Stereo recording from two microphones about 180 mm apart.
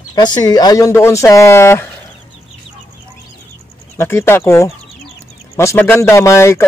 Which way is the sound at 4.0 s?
15° left (ahead or behind).